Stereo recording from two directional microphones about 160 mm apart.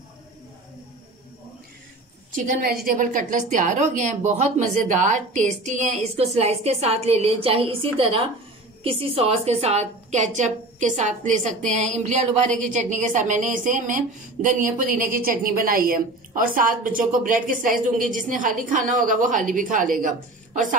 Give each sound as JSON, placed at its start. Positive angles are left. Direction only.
{"t": 2.3, "sound": "a woman's voice", "side_deg": -55}